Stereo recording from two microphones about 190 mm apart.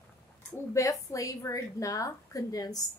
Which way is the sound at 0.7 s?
15° left (ahead or behind).